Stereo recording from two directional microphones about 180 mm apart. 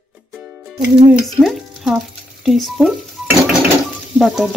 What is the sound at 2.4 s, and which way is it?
Speech, centre (ahead or behind).